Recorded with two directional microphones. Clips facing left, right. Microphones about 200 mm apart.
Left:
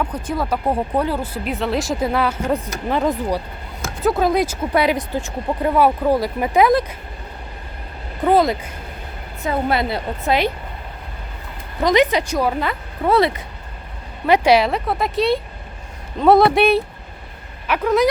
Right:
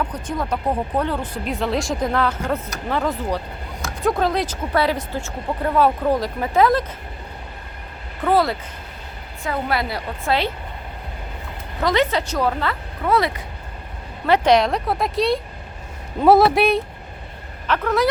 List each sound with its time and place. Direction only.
0.1 s speech: 10° left (ahead or behind)
8.2 s a woman's voice: 20° left (ahead or behind)
11.8 s speech: 15° left (ahead or behind)
13.1 s a woman's voice: 30° left (ahead or behind)
14.3 s speech: 10° left (ahead or behind)
17.7 s speech: 15° left (ahead or behind)